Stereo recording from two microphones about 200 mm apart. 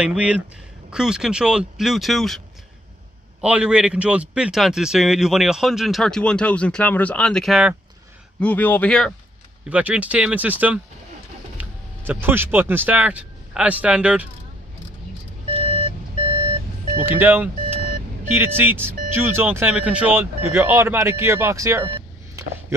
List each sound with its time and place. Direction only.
0.0 s a man's voice: 5° right (ahead or behind)
9.7 s speech: 5° right (ahead or behind)
17.0 s speech: 10° right (ahead or behind)